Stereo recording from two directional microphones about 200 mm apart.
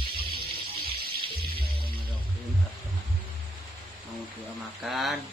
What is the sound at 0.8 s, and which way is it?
Music, 50° right (ahead or behind).